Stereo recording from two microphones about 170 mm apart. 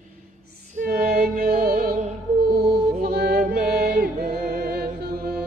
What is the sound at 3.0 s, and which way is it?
Music, 65° right (ahead or behind).